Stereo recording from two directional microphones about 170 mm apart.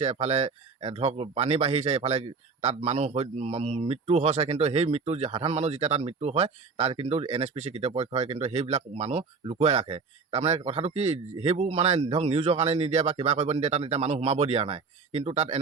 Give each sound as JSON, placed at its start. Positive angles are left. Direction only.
{"t": 0.0, "sound": "speech", "side_deg": -40}